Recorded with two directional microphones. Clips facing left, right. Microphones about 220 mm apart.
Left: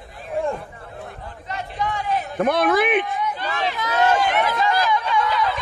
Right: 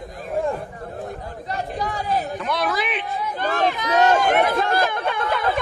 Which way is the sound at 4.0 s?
45° right (ahead or behind).